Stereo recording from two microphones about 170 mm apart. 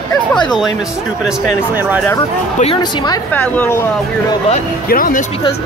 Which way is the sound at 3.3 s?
10° left (ahead or behind).